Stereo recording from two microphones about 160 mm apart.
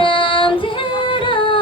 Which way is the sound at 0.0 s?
30° left (ahead or behind).